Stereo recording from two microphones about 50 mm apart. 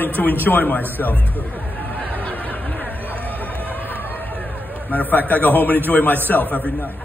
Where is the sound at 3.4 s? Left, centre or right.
Left.